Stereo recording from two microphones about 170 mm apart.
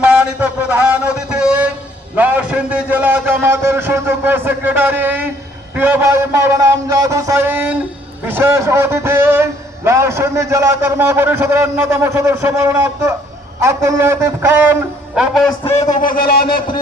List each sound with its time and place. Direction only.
0.0 s a sound: 5° right (ahead or behind)
2.1 s a man's voice: 10° right (ahead or behind)
15.6 s a man's voice: 35° left (ahead or behind)
16.0 s speech: 60° left (ahead or behind)